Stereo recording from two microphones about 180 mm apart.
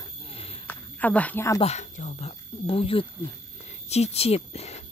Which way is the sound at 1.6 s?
40° left (ahead or behind).